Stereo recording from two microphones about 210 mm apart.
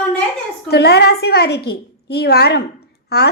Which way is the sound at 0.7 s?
50° left (ahead or behind).